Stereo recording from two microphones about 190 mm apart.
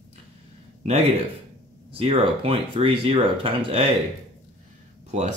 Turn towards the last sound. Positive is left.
turn(degrees=-35)  # may be behind; listen again after turning